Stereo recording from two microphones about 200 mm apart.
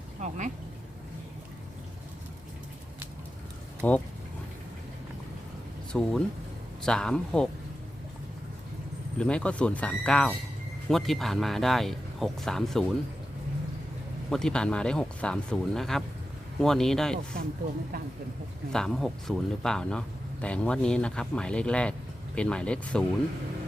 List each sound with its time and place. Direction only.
0.2 s speech: 40° right (ahead or behind)
3.8 s speech: 10° left (ahead or behind)
5.9 s speech: 5° left (ahead or behind)
9.1 s speech: 5° left (ahead or behind)
14.3 s speech: 5° left (ahead or behind)
18.7 s speech: centre (ahead or behind)